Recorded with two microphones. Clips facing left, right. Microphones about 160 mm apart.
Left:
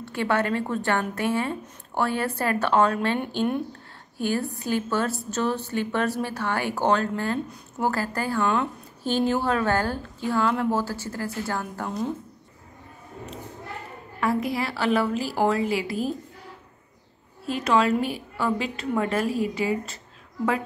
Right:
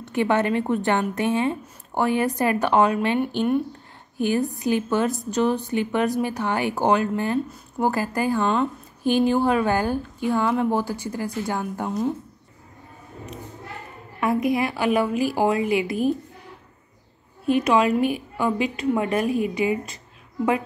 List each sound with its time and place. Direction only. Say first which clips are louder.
0.0 s a woman's voice: right 3 dB; 20° right (ahead or behind)
4.2 s a woman's voice: right 4 dB; 15° right (ahead or behind)
14.2 s a woman's voice: right 4 dB; 20° right (ahead or behind)
17.5 s a woman's voice: right 3 dB; 15° right (ahead or behind)